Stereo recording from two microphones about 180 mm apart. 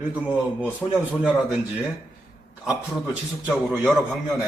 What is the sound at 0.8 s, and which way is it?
Speech, 15° left (ahead or behind).